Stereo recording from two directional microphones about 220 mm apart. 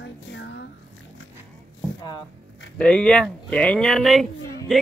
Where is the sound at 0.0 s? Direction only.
55° left (ahead or behind).